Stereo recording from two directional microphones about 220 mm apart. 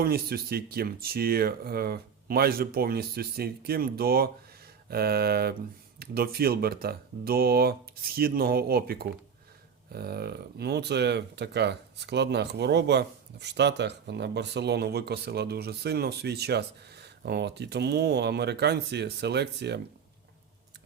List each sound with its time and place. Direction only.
0.0 s speech: 45° right (ahead or behind)